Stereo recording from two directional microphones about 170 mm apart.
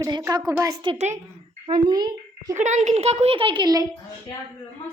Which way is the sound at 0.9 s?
40° right (ahead or behind).